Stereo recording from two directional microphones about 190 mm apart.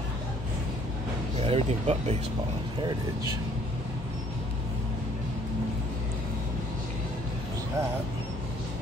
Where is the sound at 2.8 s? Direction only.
20° right (ahead or behind).